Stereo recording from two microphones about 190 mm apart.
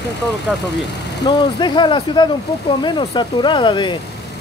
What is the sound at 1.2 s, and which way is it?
Speech, 25° left (ahead or behind).